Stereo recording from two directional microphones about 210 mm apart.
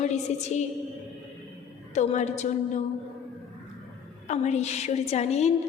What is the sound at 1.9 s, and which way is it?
Speech, 35° left (ahead or behind).